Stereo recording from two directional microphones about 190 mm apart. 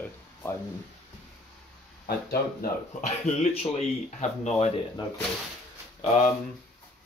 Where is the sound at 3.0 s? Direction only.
35° left (ahead or behind).